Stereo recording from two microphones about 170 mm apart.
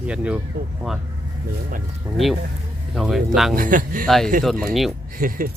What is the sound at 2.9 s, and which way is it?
Speech, centre (ahead or behind).